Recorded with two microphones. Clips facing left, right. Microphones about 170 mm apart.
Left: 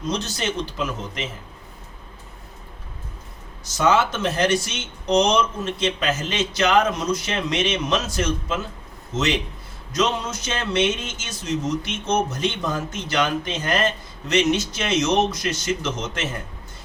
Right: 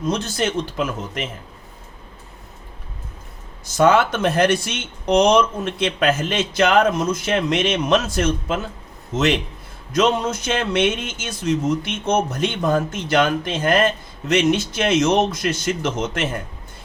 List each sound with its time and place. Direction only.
0.1 s a man's voice: 50° right (ahead or behind)
3.8 s speech: 55° right (ahead or behind)